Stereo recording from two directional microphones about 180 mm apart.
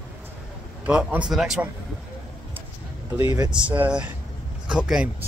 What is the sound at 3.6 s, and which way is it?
A man's voice, 10° right (ahead or behind).